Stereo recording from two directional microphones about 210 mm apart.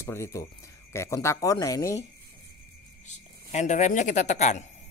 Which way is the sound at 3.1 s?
35° left (ahead or behind).